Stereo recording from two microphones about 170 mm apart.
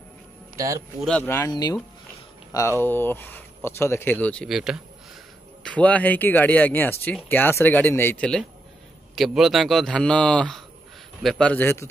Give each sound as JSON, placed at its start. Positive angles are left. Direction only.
{"t": 0.6, "sound": "a man's voice", "side_deg": -20}
{"t": 1.0, "sound": "speech", "side_deg": 10}
{"t": 2.8, "sound": "speech", "side_deg": 10}
{"t": 5.6, "sound": "speech", "side_deg": 5}
{"t": 9.1, "sound": "a man's voice", "side_deg": 0}